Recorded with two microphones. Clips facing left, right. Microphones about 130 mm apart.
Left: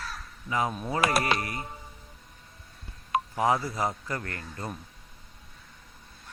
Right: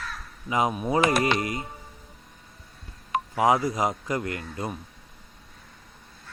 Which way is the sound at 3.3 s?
15° right (ahead or behind).